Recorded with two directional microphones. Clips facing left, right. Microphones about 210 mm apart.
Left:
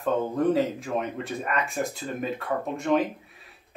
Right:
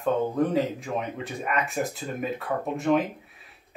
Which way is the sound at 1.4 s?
Centre (ahead or behind).